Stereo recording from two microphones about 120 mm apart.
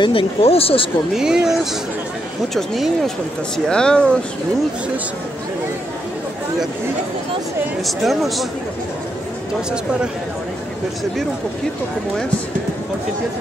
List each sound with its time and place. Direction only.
0.0 s speech: 50° left (ahead or behind)
1.1 s speech: 5° right (ahead or behind)
7.8 s speech: centre (ahead or behind)